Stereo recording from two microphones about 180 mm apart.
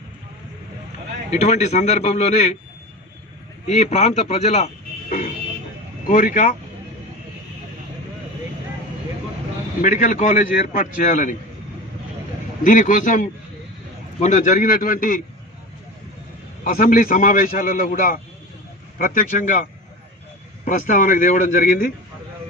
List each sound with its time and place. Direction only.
1.3 s speech: 40° left (ahead or behind)
3.6 s speech: 40° left (ahead or behind)
6.0 s a man's voice: 50° left (ahead or behind)
9.8 s a man's voice: 50° left (ahead or behind)
12.6 s a man's voice: 45° left (ahead or behind)
16.6 s a man's voice: 50° left (ahead or behind)